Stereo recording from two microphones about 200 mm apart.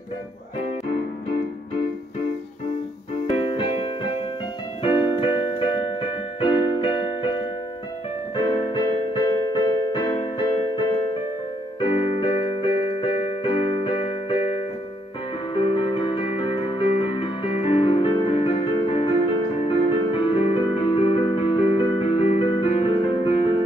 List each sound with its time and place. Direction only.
3.3 s keyboard: 25° left (ahead or behind)
15.5 s music: 25° left (ahead or behind)